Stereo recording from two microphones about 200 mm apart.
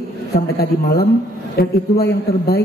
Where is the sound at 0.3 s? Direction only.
50° left (ahead or behind).